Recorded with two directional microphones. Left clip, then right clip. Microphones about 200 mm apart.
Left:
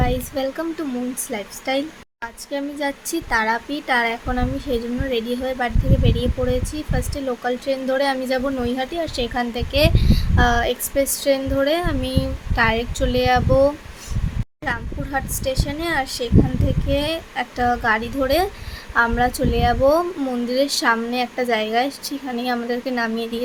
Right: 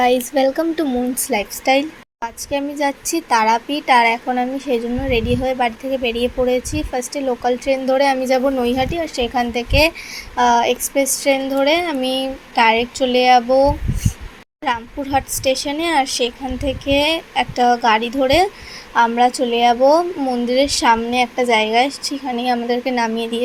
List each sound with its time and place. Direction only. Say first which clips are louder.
0.0 s speech: right 8 dB; 25° right (ahead or behind); by 13.7 s 5° right (ahead or behind)
14.6 s speech: right 5 dB; 15° right (ahead or behind)